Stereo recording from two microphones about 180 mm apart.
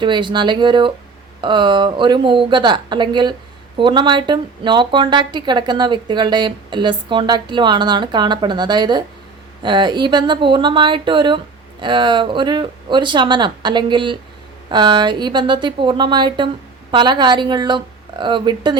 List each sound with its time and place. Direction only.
0.0 s speech: 25° right (ahead or behind)